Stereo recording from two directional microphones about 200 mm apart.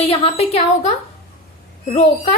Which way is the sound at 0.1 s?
30° left (ahead or behind).